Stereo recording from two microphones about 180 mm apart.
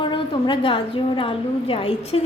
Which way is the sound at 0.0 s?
25° left (ahead or behind).